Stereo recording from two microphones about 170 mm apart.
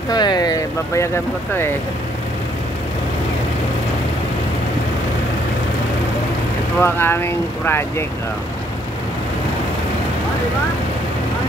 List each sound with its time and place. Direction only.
0.1 s speech: 25° left (ahead or behind)
6.8 s speech: 15° left (ahead or behind)